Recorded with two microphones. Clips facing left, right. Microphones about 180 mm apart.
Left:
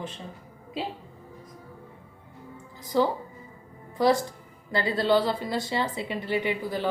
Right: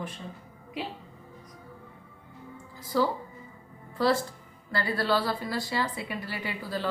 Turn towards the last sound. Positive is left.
turn(degrees=15)  # may be behind; listen again after turning